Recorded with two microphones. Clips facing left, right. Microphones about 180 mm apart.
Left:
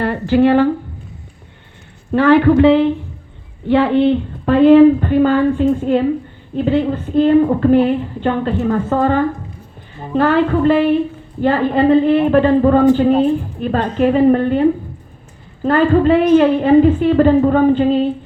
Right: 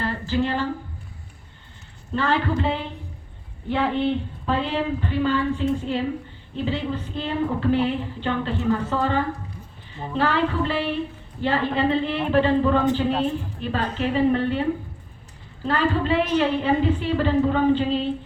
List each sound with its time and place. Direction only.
0.0 s speech: 65° left (ahead or behind)
2.1 s a woman's voice: 65° left (ahead or behind)